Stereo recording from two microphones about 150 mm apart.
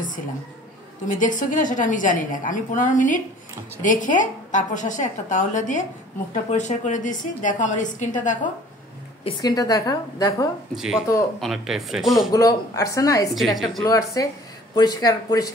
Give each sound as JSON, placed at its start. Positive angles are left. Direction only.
{"t": 1.0, "sound": "a woman's voice", "side_deg": 60}
{"t": 9.4, "sound": "a woman's voice", "side_deg": 25}
{"t": 10.8, "sound": "speech", "side_deg": 0}
{"t": 12.3, "sound": "a woman's voice", "side_deg": 25}
{"t": 13.3, "sound": "speech", "side_deg": 0}
{"t": 14.2, "sound": "a woman's voice", "side_deg": 25}